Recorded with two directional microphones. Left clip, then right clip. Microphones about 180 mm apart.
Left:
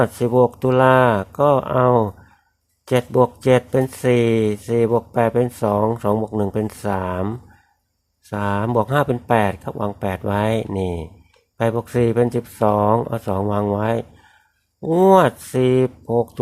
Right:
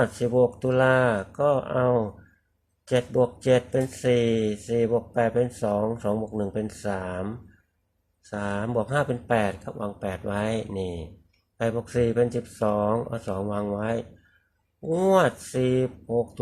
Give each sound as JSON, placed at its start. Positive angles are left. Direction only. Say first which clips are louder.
{"t": 0.0, "sound": "speech", "louder": "left 6 dB", "side_deg": 40}